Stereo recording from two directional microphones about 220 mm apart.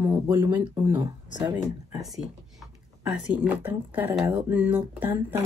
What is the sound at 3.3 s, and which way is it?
Speech, 5° right (ahead or behind).